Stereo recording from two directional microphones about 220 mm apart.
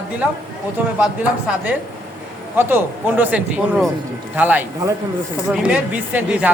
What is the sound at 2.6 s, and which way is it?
A woman's voice, 10° right (ahead or behind).